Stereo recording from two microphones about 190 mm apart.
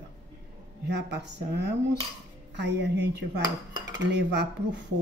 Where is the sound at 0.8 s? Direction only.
65° right (ahead or behind).